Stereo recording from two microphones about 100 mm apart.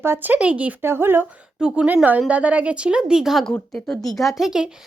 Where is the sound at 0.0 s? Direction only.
20° right (ahead or behind).